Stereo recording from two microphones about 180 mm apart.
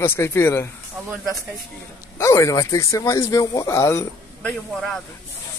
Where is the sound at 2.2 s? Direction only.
15° left (ahead or behind).